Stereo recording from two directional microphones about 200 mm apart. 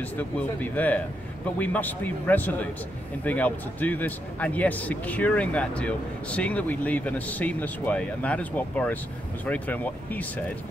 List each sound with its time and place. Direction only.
0.0 s speech: 10° left (ahead or behind)